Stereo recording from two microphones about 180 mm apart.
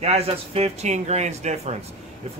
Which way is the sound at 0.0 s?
35° right (ahead or behind).